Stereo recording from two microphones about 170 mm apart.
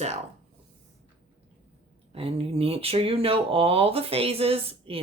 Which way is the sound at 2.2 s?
35° right (ahead or behind).